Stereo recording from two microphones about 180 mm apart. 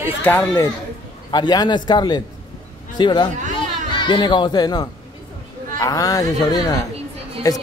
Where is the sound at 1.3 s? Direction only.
25° left (ahead or behind).